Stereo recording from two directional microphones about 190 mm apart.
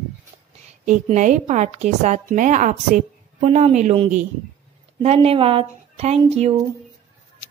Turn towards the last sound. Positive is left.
turn(degrees=-35)  # may be behind; listen again after turning